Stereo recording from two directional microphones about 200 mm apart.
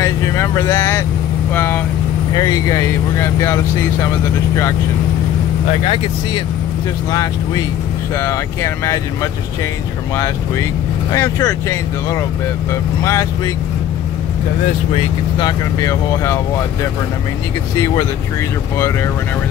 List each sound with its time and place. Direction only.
0.0 s speech: 15° left (ahead or behind)
7.1 s speech: 20° left (ahead or behind)
15.3 s speech: 20° left (ahead or behind)